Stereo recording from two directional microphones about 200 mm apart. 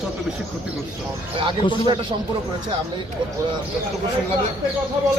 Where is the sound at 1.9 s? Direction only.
20° right (ahead or behind).